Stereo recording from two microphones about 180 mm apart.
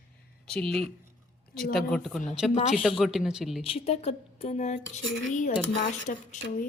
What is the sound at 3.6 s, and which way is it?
Speech, 35° left (ahead or behind).